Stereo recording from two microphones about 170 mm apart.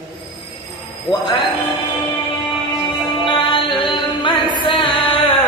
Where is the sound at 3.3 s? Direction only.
30° left (ahead or behind).